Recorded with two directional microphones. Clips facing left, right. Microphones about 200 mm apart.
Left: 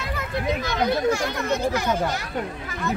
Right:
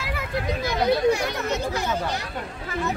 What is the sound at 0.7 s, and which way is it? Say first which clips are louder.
Speech: right 3 dB; 15° right (ahead or behind).